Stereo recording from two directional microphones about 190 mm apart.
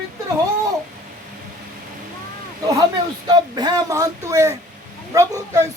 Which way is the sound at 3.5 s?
20° right (ahead or behind).